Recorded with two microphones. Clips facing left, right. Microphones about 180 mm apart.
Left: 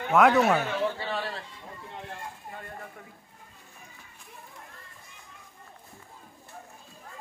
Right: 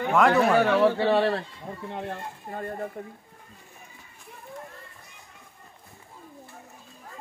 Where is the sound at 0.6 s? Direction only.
65° right (ahead or behind); by 2.9 s 40° right (ahead or behind).